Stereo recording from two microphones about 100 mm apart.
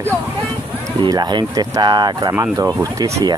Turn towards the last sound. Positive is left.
turn(degrees=-30)  # may be behind; listen again after turning